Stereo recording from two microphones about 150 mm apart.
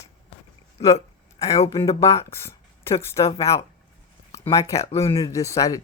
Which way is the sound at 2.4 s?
15° left (ahead or behind).